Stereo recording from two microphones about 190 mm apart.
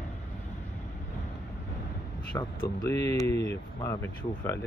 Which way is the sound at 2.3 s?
15° left (ahead or behind).